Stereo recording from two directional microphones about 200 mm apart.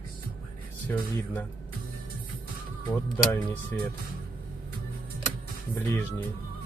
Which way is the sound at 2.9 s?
5° left (ahead or behind).